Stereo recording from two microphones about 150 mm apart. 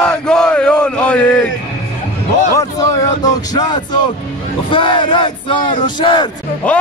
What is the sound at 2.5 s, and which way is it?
Speech, 20° left (ahead or behind).